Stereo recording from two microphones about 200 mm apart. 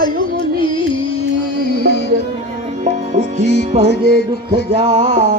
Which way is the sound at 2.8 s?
35° right (ahead or behind).